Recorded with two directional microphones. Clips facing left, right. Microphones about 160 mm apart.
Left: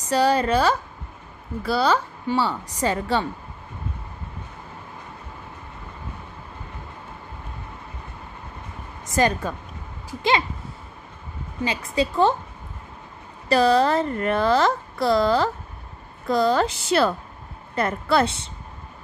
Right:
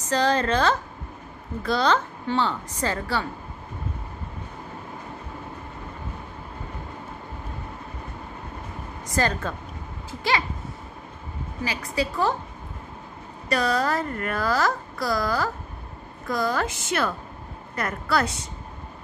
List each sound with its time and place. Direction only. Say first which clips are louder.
0.0 s a woman's voice: left 3 dB; 10° left (ahead or behind)
9.1 s a woman's voice: left 4 dB; 15° left (ahead or behind)
11.6 s speech: left 4 dB; 25° left (ahead or behind)
13.5 s a woman's voice: left 6 dB; 30° left (ahead or behind)